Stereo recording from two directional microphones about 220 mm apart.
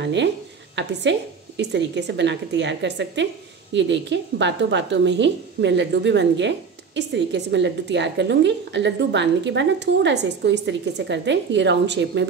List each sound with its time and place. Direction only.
0.0 s a woman's voice: 50° right (ahead or behind)